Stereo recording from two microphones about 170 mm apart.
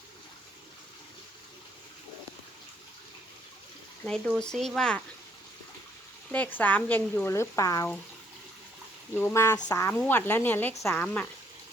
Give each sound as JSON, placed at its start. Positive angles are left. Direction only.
{"t": 4.4, "sound": "speech", "side_deg": 5}
{"t": 6.3, "sound": "speech", "side_deg": 10}
{"t": 9.1, "sound": "speech", "side_deg": 15}